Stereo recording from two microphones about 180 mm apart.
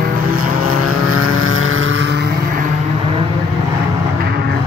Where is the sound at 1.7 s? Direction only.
90° right.